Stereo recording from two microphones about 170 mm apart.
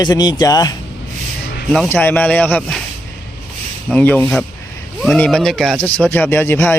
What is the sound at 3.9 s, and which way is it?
Speech, 10° left (ahead or behind).